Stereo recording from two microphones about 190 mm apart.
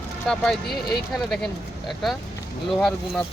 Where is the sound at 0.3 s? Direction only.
Centre (ahead or behind).